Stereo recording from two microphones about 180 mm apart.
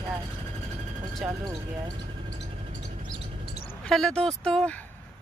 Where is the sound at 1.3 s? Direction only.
20° right (ahead or behind).